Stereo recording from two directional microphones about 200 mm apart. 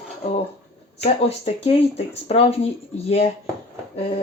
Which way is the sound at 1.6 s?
30° left (ahead or behind).